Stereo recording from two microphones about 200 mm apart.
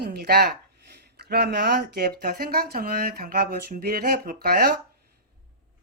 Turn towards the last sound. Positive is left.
turn(degrees=-50)  # may be behind; listen again after turning